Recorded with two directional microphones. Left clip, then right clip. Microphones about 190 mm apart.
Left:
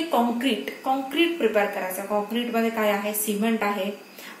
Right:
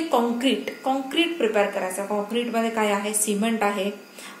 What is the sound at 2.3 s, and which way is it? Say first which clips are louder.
A woman's voice: right 1 dB; 55° right (ahead or behind).